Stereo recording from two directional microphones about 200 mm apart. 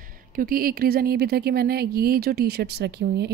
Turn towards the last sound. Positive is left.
turn(degrees=-55)  # may be behind; listen again after turning